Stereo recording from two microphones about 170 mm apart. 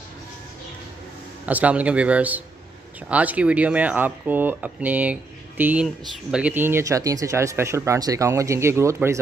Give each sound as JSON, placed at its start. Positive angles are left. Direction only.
{"t": 1.4, "sound": "speech", "side_deg": -10}